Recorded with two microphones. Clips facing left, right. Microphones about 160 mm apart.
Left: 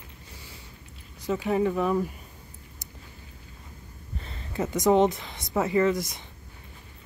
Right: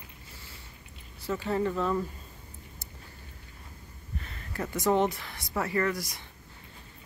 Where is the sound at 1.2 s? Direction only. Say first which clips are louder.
Left 4 dB; 15° left (ahead or behind).